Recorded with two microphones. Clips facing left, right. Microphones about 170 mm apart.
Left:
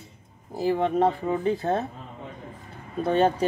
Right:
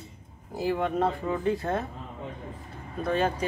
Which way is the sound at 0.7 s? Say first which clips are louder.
Left 5 dB; 25° left (ahead or behind).